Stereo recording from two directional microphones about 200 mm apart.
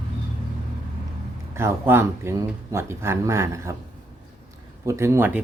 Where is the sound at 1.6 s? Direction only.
10° right (ahead or behind).